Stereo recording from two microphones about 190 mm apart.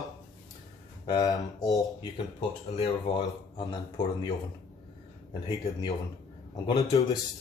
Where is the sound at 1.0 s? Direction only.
20° left (ahead or behind).